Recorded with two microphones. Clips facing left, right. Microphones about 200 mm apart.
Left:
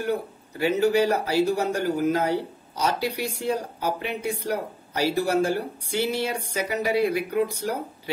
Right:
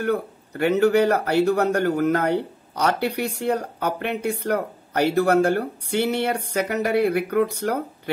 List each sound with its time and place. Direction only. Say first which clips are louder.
0.0 s speech: right 3 dB; 65° right (ahead or behind)